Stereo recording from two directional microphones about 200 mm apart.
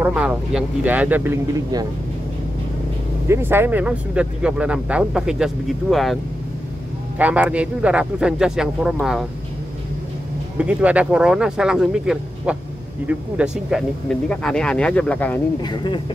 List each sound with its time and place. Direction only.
0.0 s speech: 5° right (ahead or behind)
3.3 s speech: 10° right (ahead or behind)
7.2 s speech: 5° right (ahead or behind)
10.6 s speech: 5° right (ahead or behind)
15.6 s speech: 25° left (ahead or behind)